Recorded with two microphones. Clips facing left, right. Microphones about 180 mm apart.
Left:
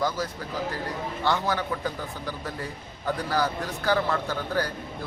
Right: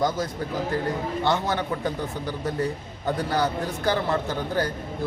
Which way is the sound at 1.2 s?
20° right (ahead or behind).